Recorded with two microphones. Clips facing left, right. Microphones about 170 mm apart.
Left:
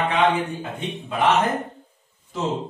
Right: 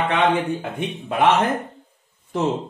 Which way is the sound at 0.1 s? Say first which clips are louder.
Right 1 dB; 65° right (ahead or behind).